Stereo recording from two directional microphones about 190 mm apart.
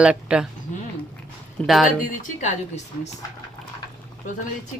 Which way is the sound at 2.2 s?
40° left (ahead or behind).